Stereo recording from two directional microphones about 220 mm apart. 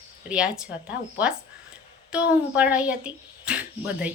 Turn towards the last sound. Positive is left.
turn(degrees=-5)  # may be behind; listen again after turning